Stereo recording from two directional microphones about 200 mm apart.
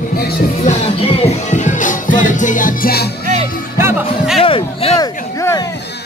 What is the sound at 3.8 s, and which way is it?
Music, 10° right (ahead or behind).